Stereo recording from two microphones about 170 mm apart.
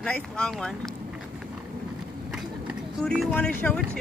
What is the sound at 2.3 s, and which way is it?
Vehicle, centre (ahead or behind).